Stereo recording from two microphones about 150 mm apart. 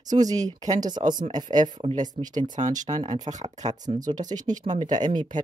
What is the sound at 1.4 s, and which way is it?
Speech, 55° right (ahead or behind).